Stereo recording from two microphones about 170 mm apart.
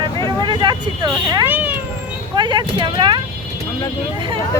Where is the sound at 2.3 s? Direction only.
25° right (ahead or behind).